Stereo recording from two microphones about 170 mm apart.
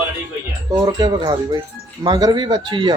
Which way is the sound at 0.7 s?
25° right (ahead or behind).